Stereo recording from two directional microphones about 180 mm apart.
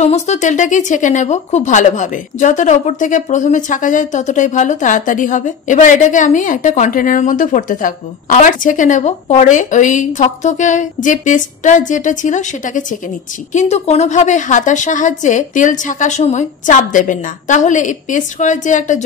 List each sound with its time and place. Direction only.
0.0 s speech: 40° left (ahead or behind)